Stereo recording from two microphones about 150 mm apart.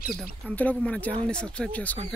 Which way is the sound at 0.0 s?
Centre (ahead or behind).